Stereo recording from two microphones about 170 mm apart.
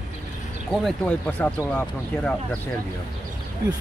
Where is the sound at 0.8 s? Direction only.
10° left (ahead or behind).